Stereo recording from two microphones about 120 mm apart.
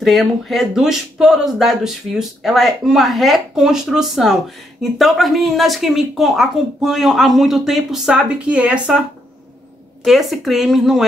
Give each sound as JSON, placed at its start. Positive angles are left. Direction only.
{"t": 0.0, "sound": "speech", "side_deg": 0}
{"t": 10.0, "sound": "speech", "side_deg": 0}